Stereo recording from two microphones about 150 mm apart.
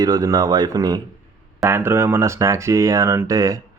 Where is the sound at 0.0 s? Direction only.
25° right (ahead or behind).